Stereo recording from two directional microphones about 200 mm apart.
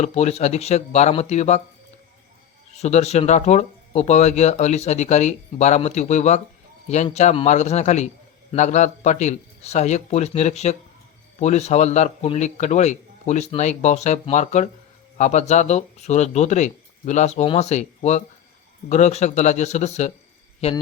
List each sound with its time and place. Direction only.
0.0 s speech: 35° left (ahead or behind)
2.7 s a man's voice: 35° left (ahead or behind)